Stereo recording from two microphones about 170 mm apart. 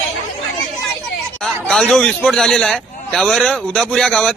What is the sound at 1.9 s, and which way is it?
A man's voice, 5° left (ahead or behind).